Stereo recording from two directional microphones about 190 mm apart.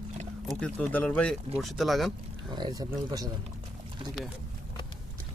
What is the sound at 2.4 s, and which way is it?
Speech, 25° right (ahead or behind).